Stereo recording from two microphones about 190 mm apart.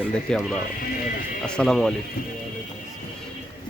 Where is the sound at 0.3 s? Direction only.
5° left (ahead or behind).